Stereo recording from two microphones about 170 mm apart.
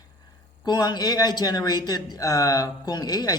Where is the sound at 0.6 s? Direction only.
25° left (ahead or behind).